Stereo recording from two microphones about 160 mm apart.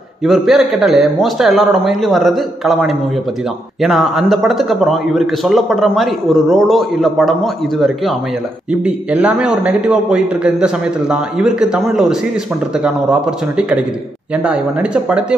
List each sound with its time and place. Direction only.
0.2 s a man's voice: centre (ahead or behind)